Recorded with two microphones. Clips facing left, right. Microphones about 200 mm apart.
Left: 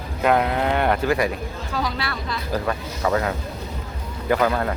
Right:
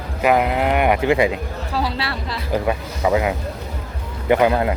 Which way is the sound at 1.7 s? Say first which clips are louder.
Right 3 dB; 30° right (ahead or behind).